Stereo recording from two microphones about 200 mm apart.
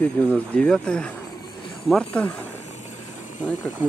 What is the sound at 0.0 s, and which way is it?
Speech, 5° left (ahead or behind).